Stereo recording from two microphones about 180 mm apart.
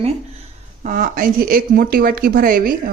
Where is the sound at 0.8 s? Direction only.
45° right (ahead or behind).